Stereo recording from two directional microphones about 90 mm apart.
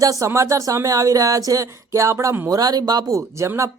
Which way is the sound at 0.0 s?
40° right (ahead or behind).